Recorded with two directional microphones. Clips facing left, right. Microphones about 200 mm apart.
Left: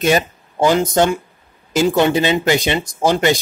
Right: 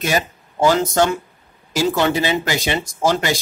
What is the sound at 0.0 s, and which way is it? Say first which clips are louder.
Speech: left 5 dB; 20° left (ahead or behind).